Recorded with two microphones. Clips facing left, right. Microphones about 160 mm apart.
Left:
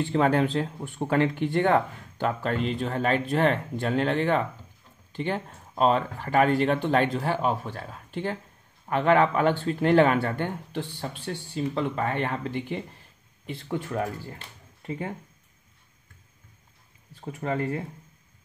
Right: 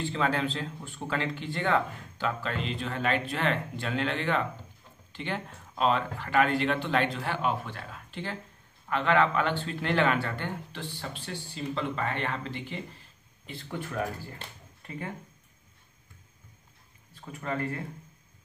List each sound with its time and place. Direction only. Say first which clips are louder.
0.0 s speech: left 6 dB; 50° left (ahead or behind)
14.8 s speech: left 5 dB; 30° left (ahead or behind)
17.3 s speech: left 4 dB; 25° left (ahead or behind)